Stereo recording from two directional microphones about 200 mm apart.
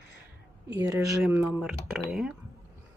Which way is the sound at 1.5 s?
Centre (ahead or behind).